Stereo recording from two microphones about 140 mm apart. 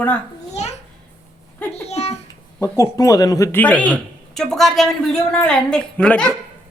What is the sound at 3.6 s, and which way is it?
Speech, 10° left (ahead or behind).